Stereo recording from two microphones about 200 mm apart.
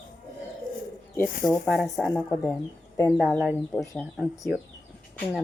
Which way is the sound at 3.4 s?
5° right (ahead or behind).